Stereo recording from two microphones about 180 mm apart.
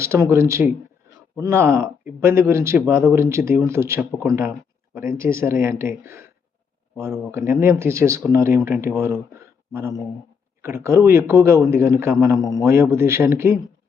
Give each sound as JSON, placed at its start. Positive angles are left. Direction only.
{"t": 0.0, "sound": "speech", "side_deg": -15}
{"t": 9.3, "sound": "a sound", "side_deg": -15}
{"t": 10.6, "sound": "speech", "side_deg": -15}
{"t": 12.4, "sound": "a man's voice", "side_deg": 20}
{"t": 12.6, "sound": "speech", "side_deg": -15}